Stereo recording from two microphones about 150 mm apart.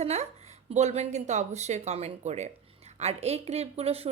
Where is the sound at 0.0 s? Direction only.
45° right (ahead or behind).